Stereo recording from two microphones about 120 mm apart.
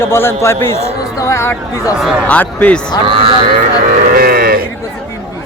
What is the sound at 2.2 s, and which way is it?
Speech, 10° left (ahead or behind).